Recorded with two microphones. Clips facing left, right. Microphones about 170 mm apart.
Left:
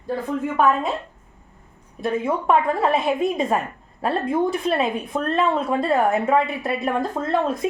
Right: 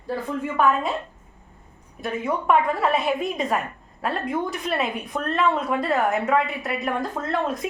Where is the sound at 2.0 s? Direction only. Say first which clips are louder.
Left 3 dB; 25° left (ahead or behind).